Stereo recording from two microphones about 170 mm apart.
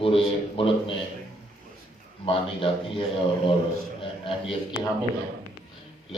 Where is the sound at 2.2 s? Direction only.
30° left (ahead or behind).